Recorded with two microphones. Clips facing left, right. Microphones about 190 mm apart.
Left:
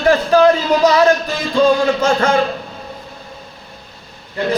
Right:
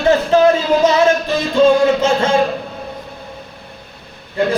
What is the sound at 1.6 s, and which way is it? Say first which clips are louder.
Music: right 2 dB; 25° right (ahead or behind).